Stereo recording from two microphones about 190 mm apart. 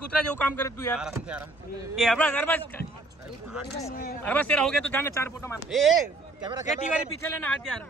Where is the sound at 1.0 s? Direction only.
5° right (ahead or behind).